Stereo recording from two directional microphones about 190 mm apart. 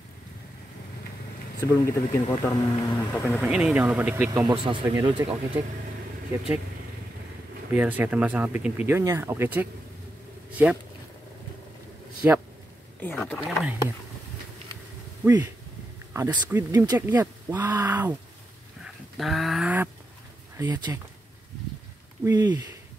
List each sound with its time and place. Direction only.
1.6 s speech: 15° left (ahead or behind)
3.2 s speech: centre (ahead or behind)
4.5 s speech: 25° right (ahead or behind)
7.7 s speech: 10° right (ahead or behind)
12.2 s speech: 10° right (ahead or behind)
13.1 s speech: centre (ahead or behind)
15.2 s speech: 15° right (ahead or behind)
18.9 s a sound: centre (ahead or behind)
20.5 s speech: 20° right (ahead or behind)
22.2 s speech: 20° right (ahead or behind)